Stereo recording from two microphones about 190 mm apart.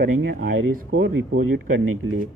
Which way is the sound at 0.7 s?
55° right (ahead or behind).